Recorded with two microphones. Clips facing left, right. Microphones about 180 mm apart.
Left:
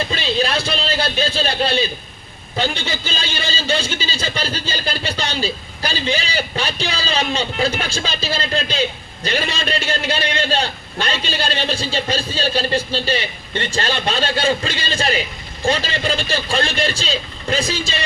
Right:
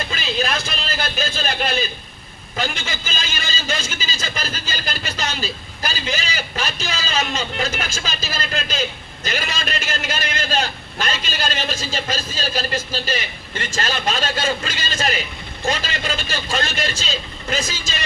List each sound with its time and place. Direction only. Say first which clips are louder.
0.1 s a man's voice: left 4 dB; 35° left (ahead or behind)